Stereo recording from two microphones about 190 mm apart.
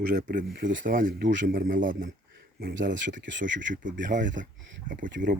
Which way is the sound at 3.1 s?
70° right (ahead or behind).